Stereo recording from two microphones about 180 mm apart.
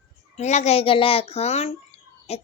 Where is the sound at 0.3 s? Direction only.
40° left (ahead or behind).